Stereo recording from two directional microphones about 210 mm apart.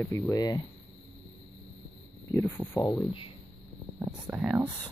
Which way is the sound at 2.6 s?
15° left (ahead or behind).